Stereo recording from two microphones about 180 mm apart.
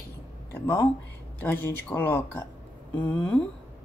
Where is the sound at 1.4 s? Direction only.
10° left (ahead or behind).